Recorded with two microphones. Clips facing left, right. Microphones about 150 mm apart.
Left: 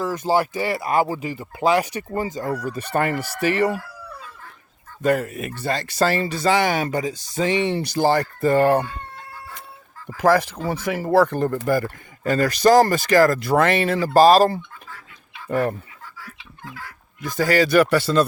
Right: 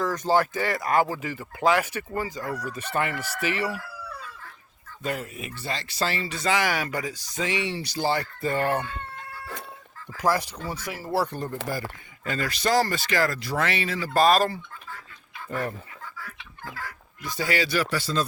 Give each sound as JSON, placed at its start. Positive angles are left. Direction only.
{"t": 0.0, "sound": "speech", "side_deg": 10}
{"t": 2.9, "sound": "speech", "side_deg": 45}
{"t": 5.0, "sound": "speech", "side_deg": 50}
{"t": 6.5, "sound": "speech", "side_deg": 25}
{"t": 7.7, "sound": "speech", "side_deg": 50}
{"t": 10.2, "sound": "speech", "side_deg": 60}
{"t": 14.1, "sound": "speech", "side_deg": 35}
{"t": 17.2, "sound": "speech", "side_deg": 45}